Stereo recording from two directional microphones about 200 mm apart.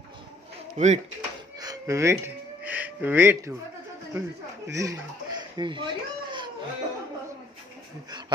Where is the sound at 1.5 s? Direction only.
20° right (ahead or behind).